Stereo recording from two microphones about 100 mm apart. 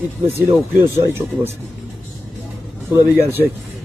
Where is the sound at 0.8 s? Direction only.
25° right (ahead or behind).